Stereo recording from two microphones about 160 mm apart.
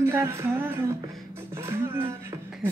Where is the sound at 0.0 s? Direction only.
15° right (ahead or behind).